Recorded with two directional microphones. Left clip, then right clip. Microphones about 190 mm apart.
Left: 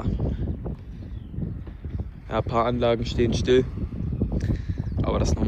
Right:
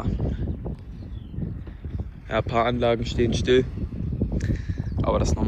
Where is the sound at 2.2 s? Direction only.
15° left (ahead or behind).